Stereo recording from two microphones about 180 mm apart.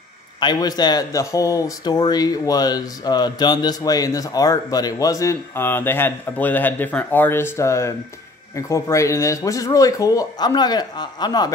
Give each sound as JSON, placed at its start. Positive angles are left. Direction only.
{"t": 0.4, "sound": "speech", "side_deg": 20}